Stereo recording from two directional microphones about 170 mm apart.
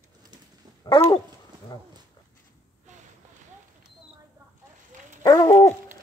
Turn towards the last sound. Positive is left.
turn(degrees=20)  # may be behind; listen again after turning